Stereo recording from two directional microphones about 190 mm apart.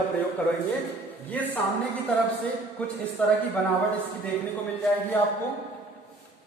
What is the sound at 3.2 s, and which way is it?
Speech, 5° left (ahead or behind).